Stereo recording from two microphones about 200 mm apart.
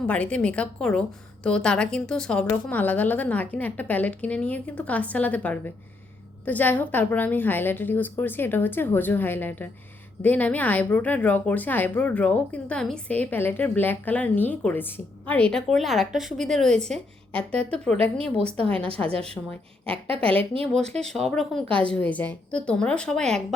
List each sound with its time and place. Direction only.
0.1 s a woman's voice: 5° left (ahead or behind)
18.3 s a woman's voice: 30° right (ahead or behind)
21.2 s a woman's voice: centre (ahead or behind)